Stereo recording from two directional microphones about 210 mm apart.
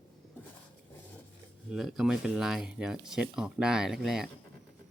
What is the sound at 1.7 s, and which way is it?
Speech, centre (ahead or behind).